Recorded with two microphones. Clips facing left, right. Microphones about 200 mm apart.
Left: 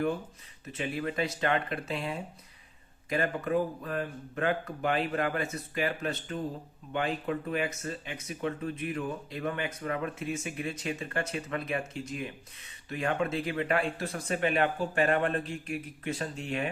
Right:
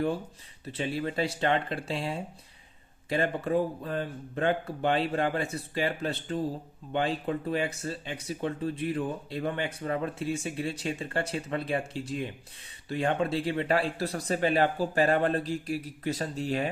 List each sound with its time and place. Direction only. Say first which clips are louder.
0.6 s speech: right 2 dB; 30° right (ahead or behind)